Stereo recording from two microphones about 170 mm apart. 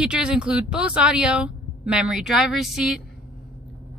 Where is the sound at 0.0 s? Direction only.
5° right (ahead or behind).